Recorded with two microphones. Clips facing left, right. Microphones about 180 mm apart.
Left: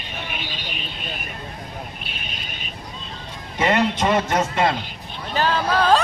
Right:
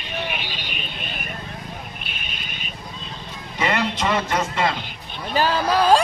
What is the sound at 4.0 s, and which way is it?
Speech, 50° left (ahead or behind).